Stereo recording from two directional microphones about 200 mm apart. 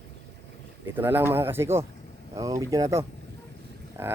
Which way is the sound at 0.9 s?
10° right (ahead or behind).